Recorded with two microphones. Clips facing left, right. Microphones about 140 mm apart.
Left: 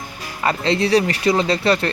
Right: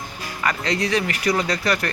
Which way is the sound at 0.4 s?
30° left (ahead or behind).